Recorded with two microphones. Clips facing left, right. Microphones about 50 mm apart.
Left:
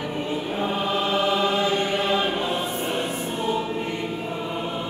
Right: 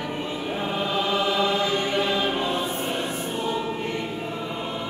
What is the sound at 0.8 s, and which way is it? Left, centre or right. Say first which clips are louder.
Chant: even; left.